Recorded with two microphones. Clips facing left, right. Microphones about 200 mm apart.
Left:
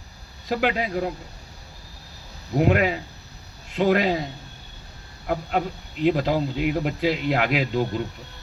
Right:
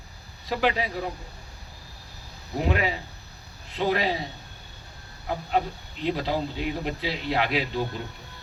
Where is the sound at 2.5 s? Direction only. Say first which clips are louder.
Left 6 dB; 55° left (ahead or behind).